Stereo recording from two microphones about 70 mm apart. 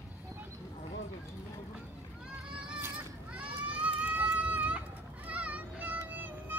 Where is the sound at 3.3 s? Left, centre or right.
Centre.